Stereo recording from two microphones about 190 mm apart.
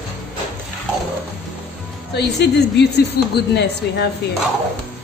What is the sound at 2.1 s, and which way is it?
Speech, 60° left (ahead or behind).